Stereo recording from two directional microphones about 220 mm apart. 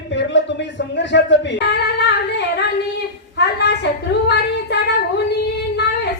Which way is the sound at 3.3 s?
50° left (ahead or behind).